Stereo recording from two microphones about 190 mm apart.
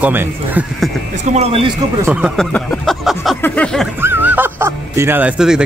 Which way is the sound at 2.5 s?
5° left (ahead or behind).